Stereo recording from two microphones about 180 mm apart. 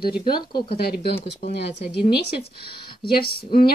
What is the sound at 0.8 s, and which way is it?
Speech, 60° left (ahead or behind).